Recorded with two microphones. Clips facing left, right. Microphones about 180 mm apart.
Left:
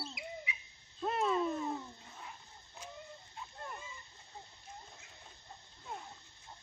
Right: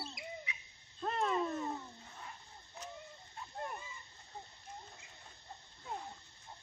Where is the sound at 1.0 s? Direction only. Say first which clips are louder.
Left 2 dB; 5° left (ahead or behind).